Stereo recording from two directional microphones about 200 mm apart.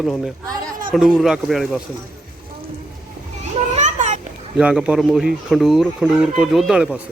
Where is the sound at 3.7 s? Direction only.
35° right (ahead or behind).